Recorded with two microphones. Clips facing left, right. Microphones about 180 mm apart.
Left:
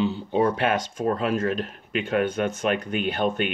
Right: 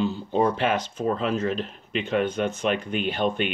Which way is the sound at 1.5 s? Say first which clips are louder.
Left 1 dB; 5° left (ahead or behind).